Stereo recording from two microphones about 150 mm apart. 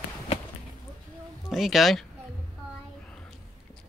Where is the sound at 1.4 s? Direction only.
Centre (ahead or behind).